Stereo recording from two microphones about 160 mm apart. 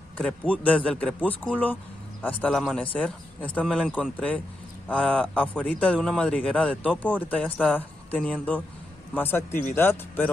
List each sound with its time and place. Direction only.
0.2 s a man's voice: 10° left (ahead or behind)